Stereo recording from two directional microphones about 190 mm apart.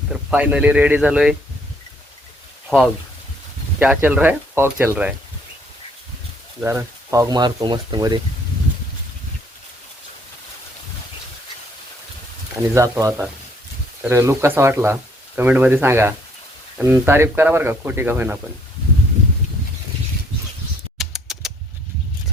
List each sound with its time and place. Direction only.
0.1 s speech: 5° right (ahead or behind)
2.6 s speech: centre (ahead or behind)
6.6 s speech: 15° right (ahead or behind)
12.7 s speech: 15° right (ahead or behind)
21.0 s typing: centre (ahead or behind)